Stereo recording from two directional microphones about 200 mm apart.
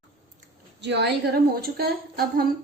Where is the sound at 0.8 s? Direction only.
55° right (ahead or behind).